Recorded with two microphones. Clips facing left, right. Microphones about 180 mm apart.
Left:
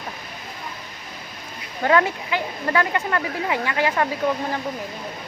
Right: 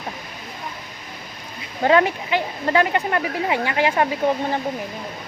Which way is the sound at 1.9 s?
25° right (ahead or behind).